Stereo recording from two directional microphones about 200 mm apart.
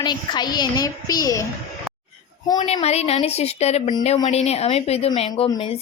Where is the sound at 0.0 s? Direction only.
20° left (ahead or behind).